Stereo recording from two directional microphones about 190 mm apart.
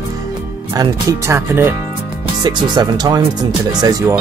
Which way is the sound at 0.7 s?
15° right (ahead or behind).